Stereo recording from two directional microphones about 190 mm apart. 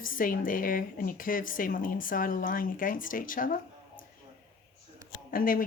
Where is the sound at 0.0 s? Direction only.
45° left (ahead or behind).